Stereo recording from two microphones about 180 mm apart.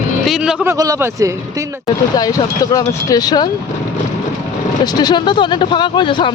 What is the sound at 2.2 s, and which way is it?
Speech, 20° left (ahead or behind).